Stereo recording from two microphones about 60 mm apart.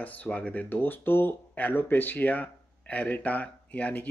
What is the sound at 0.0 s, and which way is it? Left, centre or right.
Speech, left.